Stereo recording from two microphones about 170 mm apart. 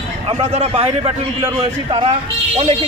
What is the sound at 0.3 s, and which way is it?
Speech, 35° right (ahead or behind).